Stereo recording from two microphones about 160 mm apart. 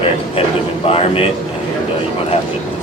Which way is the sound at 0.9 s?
35° left (ahead or behind).